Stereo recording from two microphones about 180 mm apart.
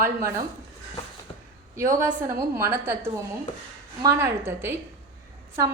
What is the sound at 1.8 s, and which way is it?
A woman's voice, 15° right (ahead or behind).